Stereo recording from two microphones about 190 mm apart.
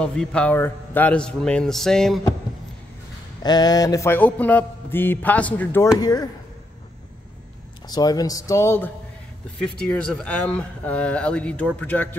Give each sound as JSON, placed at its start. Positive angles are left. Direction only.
{"t": 0.0, "sound": "a man's voice", "side_deg": 5}
{"t": 3.4, "sound": "speech", "side_deg": 20}
{"t": 5.9, "sound": "speech", "side_deg": 20}
{"t": 7.8, "sound": "speech", "side_deg": 20}